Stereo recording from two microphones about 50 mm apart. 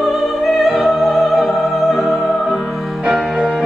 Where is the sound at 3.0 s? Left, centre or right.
Centre.